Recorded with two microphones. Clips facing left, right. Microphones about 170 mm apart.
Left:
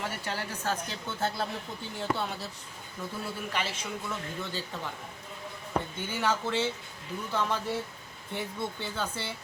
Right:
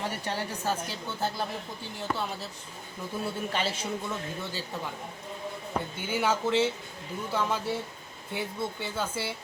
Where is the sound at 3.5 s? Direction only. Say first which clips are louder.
Right 3 dB; 30° right (ahead or behind).